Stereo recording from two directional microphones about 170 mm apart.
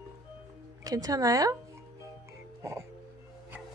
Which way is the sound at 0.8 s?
20° right (ahead or behind).